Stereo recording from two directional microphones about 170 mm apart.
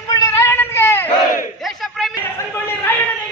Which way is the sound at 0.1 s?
20° left (ahead or behind).